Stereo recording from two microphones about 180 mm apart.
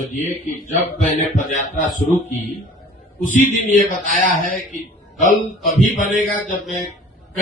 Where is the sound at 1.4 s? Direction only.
45° left (ahead or behind).